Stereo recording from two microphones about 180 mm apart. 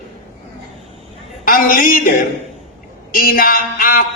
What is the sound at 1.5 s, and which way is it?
A man's voice, 50° left (ahead or behind).